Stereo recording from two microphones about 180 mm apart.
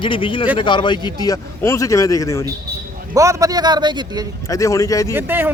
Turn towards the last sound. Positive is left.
turn(degrees=-10)  # may be behind; listen again after turning